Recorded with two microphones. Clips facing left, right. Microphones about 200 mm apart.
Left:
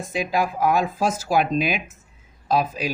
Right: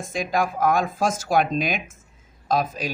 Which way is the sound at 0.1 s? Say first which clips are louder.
Left 1 dB; 5° left (ahead or behind).